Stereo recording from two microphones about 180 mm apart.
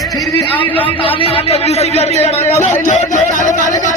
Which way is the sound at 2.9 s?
45° left (ahead or behind).